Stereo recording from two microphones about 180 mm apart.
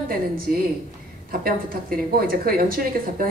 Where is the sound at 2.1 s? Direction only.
55° right (ahead or behind).